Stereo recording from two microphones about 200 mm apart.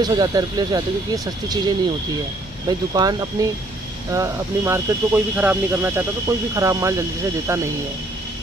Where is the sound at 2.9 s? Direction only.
20° right (ahead or behind).